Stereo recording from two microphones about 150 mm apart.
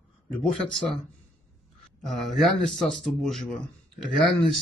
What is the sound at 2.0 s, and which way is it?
A man's voice, centre (ahead or behind).